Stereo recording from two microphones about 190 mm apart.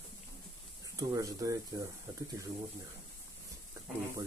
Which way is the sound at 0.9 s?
20° right (ahead or behind).